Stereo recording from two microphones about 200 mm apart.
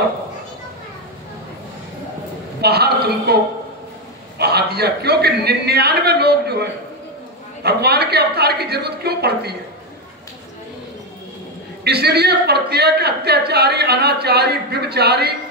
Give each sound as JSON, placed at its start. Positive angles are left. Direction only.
{"t": 2.6, "sound": "a woman's voice", "side_deg": -55}
{"t": 4.4, "sound": "a woman's voice", "side_deg": -55}
{"t": 11.8, "sound": "a woman's voice", "side_deg": -55}